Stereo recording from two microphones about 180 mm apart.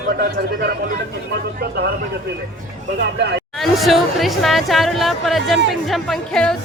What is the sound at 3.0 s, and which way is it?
Speech, 70° right (ahead or behind).